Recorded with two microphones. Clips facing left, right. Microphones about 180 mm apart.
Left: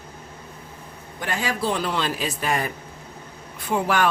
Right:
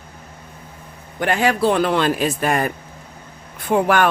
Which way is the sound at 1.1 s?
65° right (ahead or behind).